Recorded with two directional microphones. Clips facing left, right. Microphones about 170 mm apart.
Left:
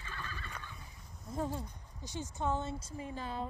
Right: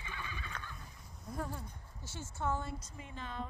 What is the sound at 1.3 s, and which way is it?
Speech, 20° left (ahead or behind).